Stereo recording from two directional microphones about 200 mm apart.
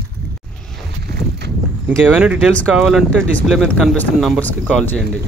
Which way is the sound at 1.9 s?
5° right (ahead or behind).